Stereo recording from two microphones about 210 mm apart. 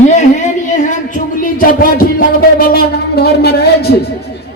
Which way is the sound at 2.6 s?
45° left (ahead or behind).